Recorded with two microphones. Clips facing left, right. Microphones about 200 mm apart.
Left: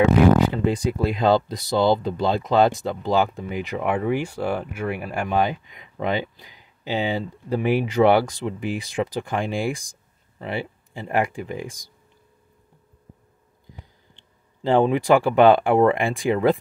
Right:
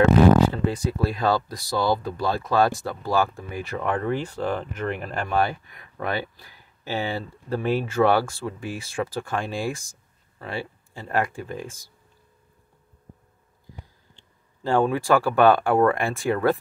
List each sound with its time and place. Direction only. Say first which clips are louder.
0.7 s speech: left 3 dB; 15° left (ahead or behind)
14.6 s speech: left 3 dB; 20° left (ahead or behind)